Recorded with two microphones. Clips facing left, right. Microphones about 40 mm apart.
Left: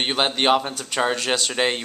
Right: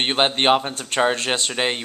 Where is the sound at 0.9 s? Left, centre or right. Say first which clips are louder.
Right 3 dB; right.